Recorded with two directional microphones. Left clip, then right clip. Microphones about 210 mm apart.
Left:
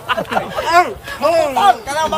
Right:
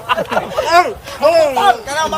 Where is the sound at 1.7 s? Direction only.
15° left (ahead or behind).